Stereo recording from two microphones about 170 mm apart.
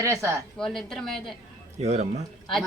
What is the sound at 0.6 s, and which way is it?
Speech, centre (ahead or behind).